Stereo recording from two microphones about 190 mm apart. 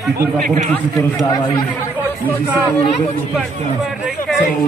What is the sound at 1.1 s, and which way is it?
Speech, 20° left (ahead or behind).